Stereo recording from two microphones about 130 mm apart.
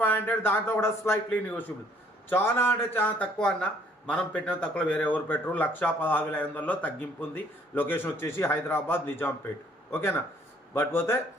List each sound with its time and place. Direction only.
0.0 s speech: 15° left (ahead or behind)